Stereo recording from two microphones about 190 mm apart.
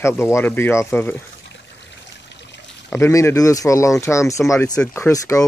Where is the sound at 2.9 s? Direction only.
15° left (ahead or behind).